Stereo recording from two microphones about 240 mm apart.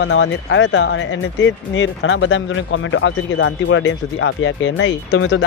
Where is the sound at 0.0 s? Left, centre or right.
Left.